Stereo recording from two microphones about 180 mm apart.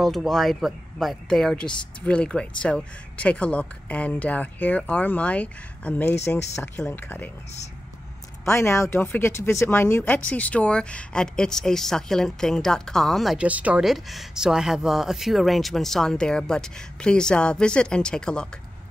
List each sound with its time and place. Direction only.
0.0 s speech: centre (ahead or behind)
8.5 s speech: 15° left (ahead or behind)